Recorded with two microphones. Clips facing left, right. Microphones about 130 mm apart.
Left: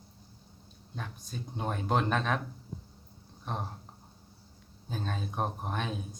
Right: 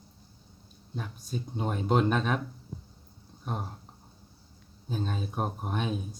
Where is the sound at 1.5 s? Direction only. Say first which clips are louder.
Right 3 dB; 15° right (ahead or behind).